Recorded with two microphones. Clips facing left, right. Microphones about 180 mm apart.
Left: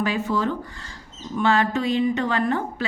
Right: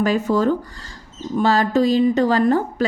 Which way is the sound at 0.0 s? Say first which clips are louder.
Right 6 dB; 40° right (ahead or behind).